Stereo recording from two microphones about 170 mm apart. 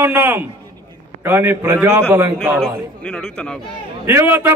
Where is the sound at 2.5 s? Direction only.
5° left (ahead or behind).